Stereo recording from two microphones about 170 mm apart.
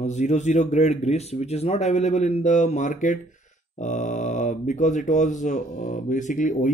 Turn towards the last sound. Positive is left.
turn(degrees=50)  # may be behind; listen again after turning